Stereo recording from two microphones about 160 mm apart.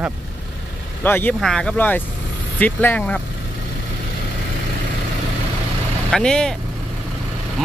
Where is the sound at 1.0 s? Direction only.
10° left (ahead or behind).